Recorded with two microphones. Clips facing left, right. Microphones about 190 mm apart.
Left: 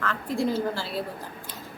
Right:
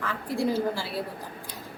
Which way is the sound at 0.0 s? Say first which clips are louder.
Left 1 dB; 15° right (ahead or behind).